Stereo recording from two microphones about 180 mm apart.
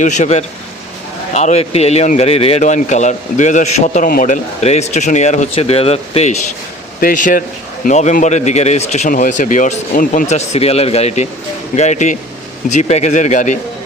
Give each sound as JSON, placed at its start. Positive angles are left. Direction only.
{"t": 0.0, "sound": "a man's voice", "side_deg": 40}
{"t": 7.0, "sound": "a man's voice", "side_deg": 50}